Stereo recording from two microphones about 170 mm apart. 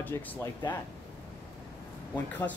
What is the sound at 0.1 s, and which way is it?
Speech, 20° left (ahead or behind).